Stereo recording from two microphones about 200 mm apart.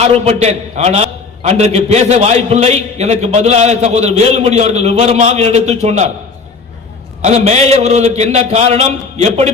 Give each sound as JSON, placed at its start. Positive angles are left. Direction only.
{"t": 0.0, "sound": "a man's voice", "side_deg": -30}
{"t": 7.2, "sound": "a man's voice", "side_deg": -35}